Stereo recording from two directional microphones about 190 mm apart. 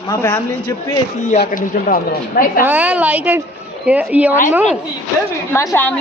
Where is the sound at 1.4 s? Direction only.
50° left (ahead or behind).